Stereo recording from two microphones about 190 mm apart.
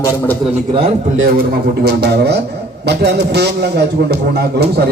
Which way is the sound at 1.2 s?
55° right (ahead or behind).